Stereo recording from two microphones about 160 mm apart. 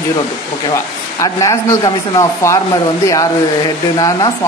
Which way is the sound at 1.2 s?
20° left (ahead or behind).